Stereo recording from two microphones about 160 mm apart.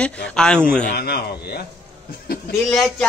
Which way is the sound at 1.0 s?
85° left.